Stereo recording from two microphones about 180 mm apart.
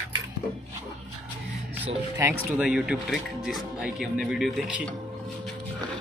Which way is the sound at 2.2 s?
15° right (ahead or behind).